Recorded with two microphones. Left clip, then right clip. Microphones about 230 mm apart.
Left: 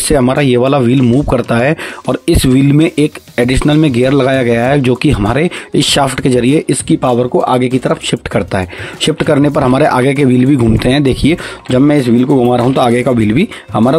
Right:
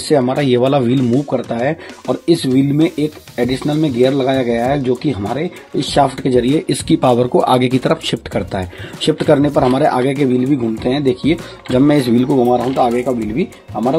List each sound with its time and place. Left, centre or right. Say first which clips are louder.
0.1 s speech: left 3 dB; left
1.2 s speech: left 6 dB; left
6.7 s speech: left 1 dB; centre
8.3 s speech: left 6 dB; left
11.7 s speech: left 3 dB; centre
13.0 s speech: left 6 dB; left